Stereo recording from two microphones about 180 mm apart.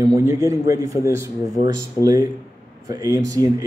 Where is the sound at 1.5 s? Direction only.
55° left (ahead or behind).